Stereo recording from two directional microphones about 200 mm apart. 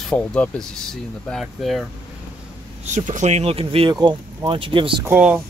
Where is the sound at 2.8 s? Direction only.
40° right (ahead or behind).